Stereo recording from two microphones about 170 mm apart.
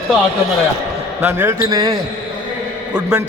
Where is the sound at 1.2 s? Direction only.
10° right (ahead or behind).